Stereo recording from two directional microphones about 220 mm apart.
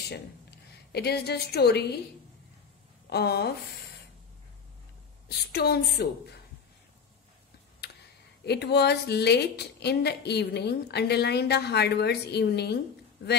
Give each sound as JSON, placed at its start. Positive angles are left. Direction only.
{"t": 0.1, "sound": "a woman's voice", "side_deg": 50}
{"t": 3.1, "sound": "a woman's voice", "side_deg": 45}
{"t": 5.5, "sound": "a woman's voice", "side_deg": 45}
{"t": 8.5, "sound": "a woman's voice", "side_deg": 50}